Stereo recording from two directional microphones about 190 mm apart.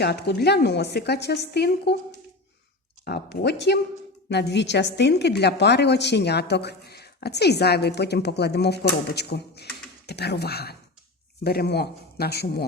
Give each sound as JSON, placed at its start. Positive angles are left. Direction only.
{"t": 0.0, "sound": "a woman's voice", "side_deg": 60}
{"t": 3.0, "sound": "a woman's voice", "side_deg": 60}